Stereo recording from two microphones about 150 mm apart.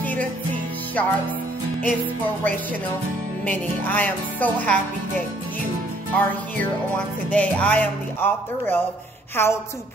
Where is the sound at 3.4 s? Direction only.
10° left (ahead or behind).